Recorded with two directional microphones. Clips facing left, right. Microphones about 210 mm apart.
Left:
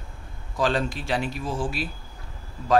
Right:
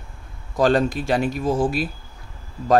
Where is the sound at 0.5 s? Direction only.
45° right (ahead or behind).